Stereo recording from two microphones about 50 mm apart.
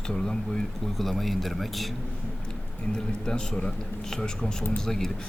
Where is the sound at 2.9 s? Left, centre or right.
Centre.